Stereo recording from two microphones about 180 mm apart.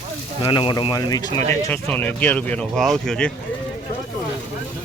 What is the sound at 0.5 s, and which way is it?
Speech, 25° left (ahead or behind).